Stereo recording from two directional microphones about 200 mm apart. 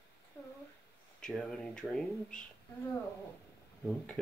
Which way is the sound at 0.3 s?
10° left (ahead or behind).